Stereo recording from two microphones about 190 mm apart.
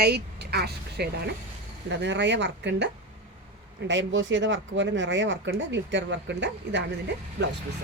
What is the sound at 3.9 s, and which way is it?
Speech, 75° right (ahead or behind).